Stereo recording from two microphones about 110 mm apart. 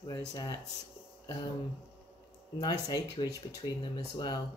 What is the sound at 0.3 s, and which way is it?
Speech, 35° left (ahead or behind).